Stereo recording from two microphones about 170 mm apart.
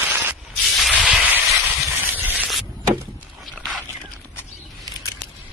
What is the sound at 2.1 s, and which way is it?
Sanding, 10° right (ahead or behind).